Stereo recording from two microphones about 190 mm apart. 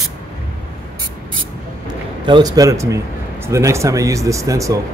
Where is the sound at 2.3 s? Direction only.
20° right (ahead or behind).